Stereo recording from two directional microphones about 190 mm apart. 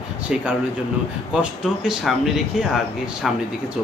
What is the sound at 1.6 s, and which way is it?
Speech, centre (ahead or behind).